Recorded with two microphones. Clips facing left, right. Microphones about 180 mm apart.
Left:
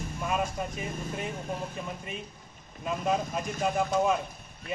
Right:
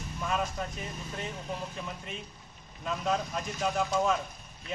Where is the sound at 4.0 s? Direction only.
10° left (ahead or behind).